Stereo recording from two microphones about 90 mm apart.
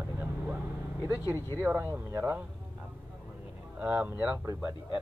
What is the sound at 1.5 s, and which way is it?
Speech, 30° right (ahead or behind).